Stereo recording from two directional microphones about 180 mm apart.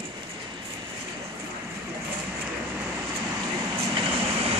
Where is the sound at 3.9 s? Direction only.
35° right (ahead or behind).